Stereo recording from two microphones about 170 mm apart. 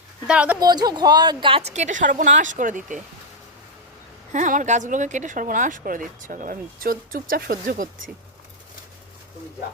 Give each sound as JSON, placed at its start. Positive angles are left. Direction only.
{"t": 0.3, "sound": "a woman's voice", "side_deg": -5}
{"t": 0.6, "sound": "a woman's voice", "side_deg": -25}
{"t": 4.3, "sound": "speech", "side_deg": -50}